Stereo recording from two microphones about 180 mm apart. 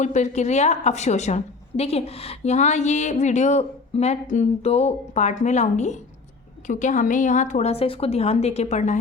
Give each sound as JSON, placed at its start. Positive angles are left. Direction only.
{"t": 0.0, "sound": "a woman's voice", "side_deg": 40}